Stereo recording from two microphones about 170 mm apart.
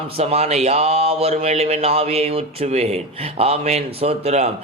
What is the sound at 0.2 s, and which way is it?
Speech, 35° right (ahead or behind).